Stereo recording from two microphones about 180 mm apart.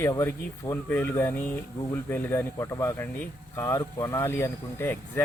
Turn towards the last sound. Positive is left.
turn(degrees=15)  # may be behind; listen again after turning